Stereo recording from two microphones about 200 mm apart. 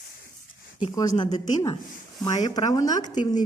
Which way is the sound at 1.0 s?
20° left (ahead or behind).